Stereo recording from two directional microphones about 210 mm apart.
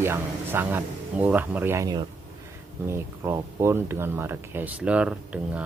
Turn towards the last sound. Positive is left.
turn(degrees=-5)  # may be behind; listen again after turning